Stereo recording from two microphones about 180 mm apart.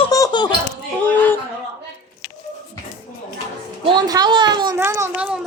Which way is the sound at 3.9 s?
20° right (ahead or behind).